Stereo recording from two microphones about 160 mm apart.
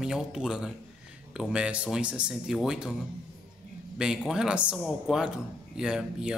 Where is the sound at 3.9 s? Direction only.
5° right (ahead or behind).